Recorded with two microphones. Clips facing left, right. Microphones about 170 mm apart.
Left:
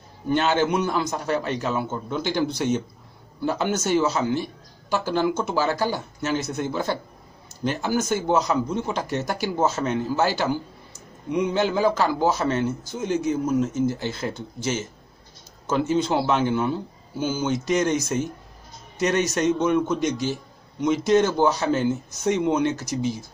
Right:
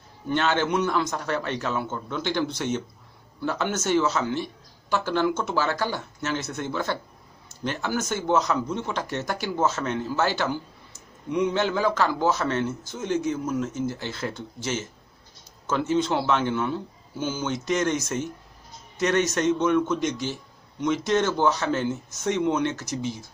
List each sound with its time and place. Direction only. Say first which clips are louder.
0.3 s speech: left 3 dB; 10° left (ahead or behind)
12.3 s speech: left 2 dB; 35° left (ahead or behind)
12.5 s speech: left 2 dB; 10° left (ahead or behind)
18.9 s a man's voice: left 1 dB; 15° left (ahead or behind)
22.7 s speech: left 4 dB; 35° left (ahead or behind)